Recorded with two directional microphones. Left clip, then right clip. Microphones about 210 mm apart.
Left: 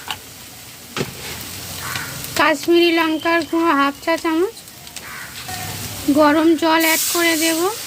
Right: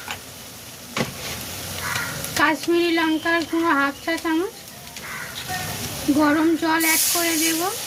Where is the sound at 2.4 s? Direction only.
55° left (ahead or behind).